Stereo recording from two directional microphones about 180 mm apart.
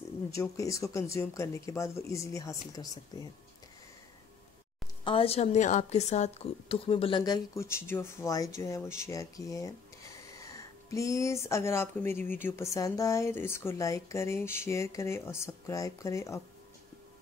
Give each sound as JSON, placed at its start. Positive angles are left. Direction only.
{"t": 0.3, "sound": "a woman's voice", "side_deg": 15}
{"t": 5.0, "sound": "a woman's voice", "side_deg": 30}